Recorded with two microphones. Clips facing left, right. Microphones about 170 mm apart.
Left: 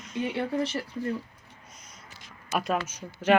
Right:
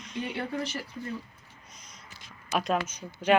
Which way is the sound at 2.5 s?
5° left (ahead or behind).